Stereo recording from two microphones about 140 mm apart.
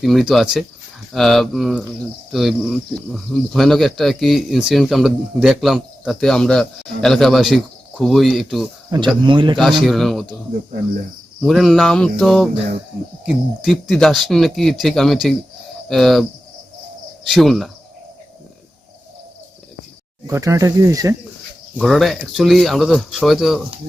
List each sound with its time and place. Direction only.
0.0 s speech: centre (ahead or behind)
9.2 s a man's voice: 35° right (ahead or behind)
9.8 s speech: centre (ahead or behind)
11.4 s speech: centre (ahead or behind)
17.2 s speech: centre (ahead or behind)
20.2 s speech: 25° right (ahead or behind)
21.8 s speech: centre (ahead or behind)